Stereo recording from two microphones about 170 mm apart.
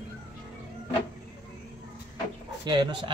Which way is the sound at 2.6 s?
25° right (ahead or behind).